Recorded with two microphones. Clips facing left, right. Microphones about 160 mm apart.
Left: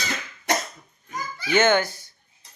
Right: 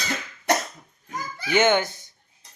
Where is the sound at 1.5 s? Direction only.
15° right (ahead or behind).